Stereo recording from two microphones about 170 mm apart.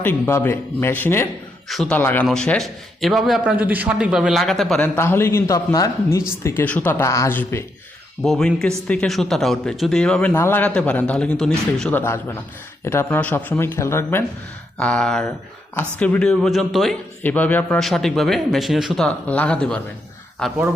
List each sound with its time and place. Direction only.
0.0 s speech: 15° left (ahead or behind)
1.6 s a man's voice: centre (ahead or behind)
2.0 s a man's voice: 10° left (ahead or behind)
4.9 s speech: 15° left (ahead or behind)
8.2 s a man's voice: centre (ahead or behind)